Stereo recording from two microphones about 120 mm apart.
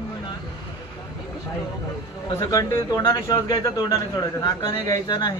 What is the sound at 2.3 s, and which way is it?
A man's voice, 30° left (ahead or behind).